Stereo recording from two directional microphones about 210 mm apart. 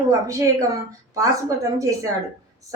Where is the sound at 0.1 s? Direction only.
15° right (ahead or behind).